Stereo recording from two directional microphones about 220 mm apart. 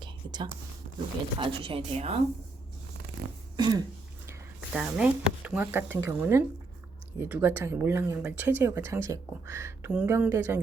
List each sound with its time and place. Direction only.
0.0 s whispering: 20° right (ahead or behind)
1.4 s speech: 25° right (ahead or behind)
3.6 s speech: 20° right (ahead or behind)
4.3 s speech: 5° right (ahead or behind)